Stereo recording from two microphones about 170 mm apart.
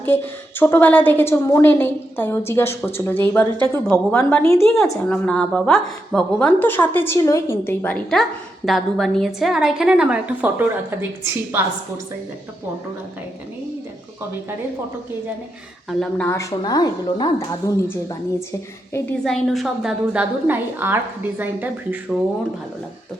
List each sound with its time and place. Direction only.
0.1 s a woman's voice: 10° left (ahead or behind); by 10.7 s 10° right (ahead or behind)
15.9 s a woman's voice: 5° left (ahead or behind); by 17.8 s 20° left (ahead or behind)
19.2 s a woman's voice: centre (ahead or behind)